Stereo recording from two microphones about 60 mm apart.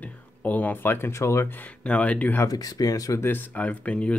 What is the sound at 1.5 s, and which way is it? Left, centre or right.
Speech, left.